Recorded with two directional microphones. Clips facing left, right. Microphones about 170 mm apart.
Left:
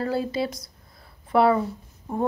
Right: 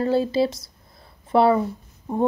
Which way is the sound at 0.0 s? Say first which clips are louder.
Right 5 dB; 25° right (ahead or behind).